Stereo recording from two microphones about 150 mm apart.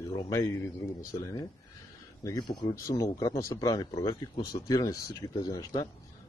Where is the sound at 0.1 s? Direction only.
20° left (ahead or behind).